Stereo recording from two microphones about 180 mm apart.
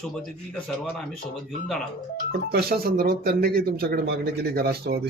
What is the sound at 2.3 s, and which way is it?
Speech, 60° right (ahead or behind).